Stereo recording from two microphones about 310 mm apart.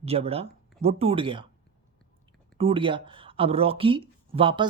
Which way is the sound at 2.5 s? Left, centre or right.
Centre.